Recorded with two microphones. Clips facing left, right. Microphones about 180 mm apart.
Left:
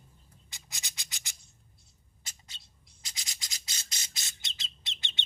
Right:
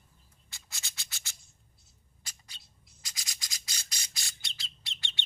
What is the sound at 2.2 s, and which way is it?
Squawk, 25° left (ahead or behind).